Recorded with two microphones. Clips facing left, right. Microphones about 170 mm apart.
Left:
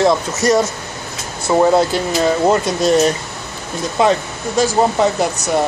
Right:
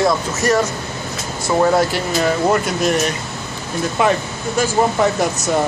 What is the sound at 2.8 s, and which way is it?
Speech, 30° left (ahead or behind).